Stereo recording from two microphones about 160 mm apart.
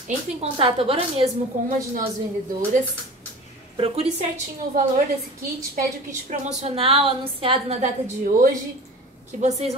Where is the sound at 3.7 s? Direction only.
35° right (ahead or behind).